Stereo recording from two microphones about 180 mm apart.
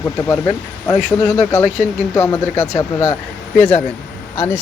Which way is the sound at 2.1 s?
15° left (ahead or behind).